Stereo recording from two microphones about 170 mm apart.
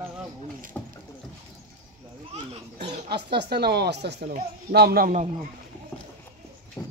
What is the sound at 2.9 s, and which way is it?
Speech, 75° right (ahead or behind).